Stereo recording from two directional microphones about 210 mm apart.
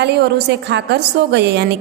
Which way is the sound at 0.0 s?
50° right (ahead or behind).